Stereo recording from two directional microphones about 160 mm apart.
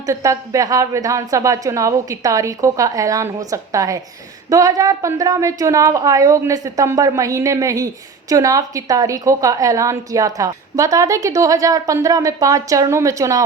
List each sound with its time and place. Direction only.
0.0 s a woman's voice: 20° right (ahead or behind)